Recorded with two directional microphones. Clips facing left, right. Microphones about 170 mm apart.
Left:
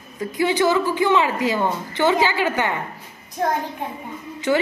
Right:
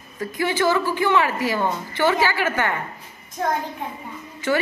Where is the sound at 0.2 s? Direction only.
20° left (ahead or behind).